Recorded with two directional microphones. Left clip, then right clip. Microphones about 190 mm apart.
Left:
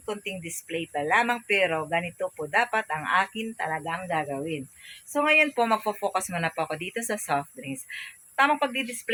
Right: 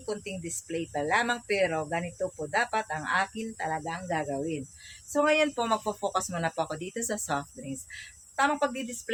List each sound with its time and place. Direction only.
0.0 s speech: 15° left (ahead or behind)